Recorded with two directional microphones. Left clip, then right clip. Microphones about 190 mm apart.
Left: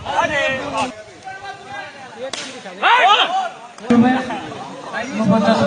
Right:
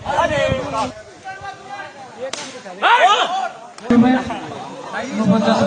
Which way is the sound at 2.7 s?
45° right (ahead or behind).